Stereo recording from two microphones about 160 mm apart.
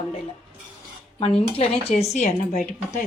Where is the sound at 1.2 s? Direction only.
35° left (ahead or behind).